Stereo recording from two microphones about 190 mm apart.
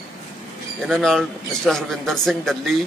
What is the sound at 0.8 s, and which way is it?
A man's voice, centre (ahead or behind).